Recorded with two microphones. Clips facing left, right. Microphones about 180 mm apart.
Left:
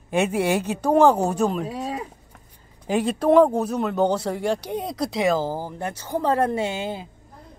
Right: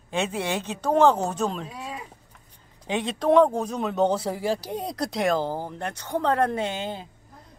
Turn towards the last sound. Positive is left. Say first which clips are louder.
# left 3 dB
turn(degrees=10)  # may be behind; listen again after turning